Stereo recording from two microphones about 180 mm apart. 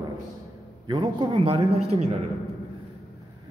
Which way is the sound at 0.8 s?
25° right (ahead or behind).